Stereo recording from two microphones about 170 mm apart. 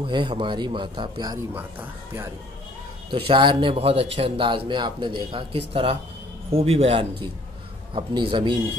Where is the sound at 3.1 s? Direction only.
30° right (ahead or behind).